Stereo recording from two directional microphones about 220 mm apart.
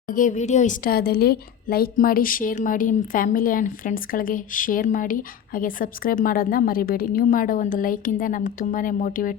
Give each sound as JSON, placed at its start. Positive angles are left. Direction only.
{"t": 0.1, "sound": "a woman's voice", "side_deg": 35}